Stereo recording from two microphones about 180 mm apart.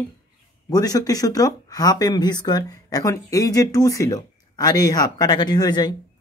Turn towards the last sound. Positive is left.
turn(degrees=20)  # may be behind; listen again after turning